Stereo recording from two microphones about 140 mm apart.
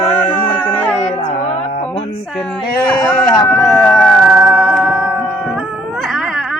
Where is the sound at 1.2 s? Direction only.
50° left (ahead or behind).